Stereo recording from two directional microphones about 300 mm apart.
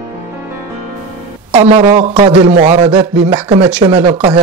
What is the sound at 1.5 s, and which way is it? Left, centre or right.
A man's voice, centre.